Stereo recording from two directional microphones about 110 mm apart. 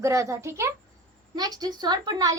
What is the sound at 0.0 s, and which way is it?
Speech, 30° right (ahead or behind).